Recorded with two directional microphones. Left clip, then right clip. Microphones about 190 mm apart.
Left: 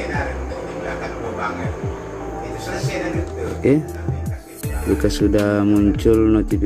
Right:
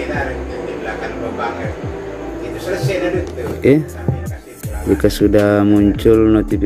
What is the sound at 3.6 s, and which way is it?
Speech, 5° right (ahead or behind).